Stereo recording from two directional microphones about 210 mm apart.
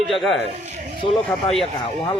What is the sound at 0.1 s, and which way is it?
Speech, centre (ahead or behind).